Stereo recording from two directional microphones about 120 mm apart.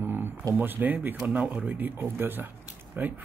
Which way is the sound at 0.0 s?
15° right (ahead or behind).